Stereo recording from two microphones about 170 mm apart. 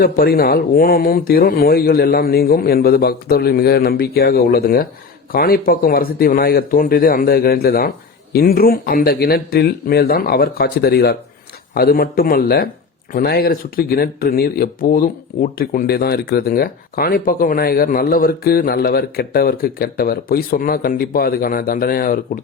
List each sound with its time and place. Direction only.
0.0 s speech: 60° left (ahead or behind)